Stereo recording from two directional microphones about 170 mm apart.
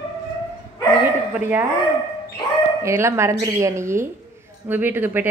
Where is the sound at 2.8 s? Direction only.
15° right (ahead or behind).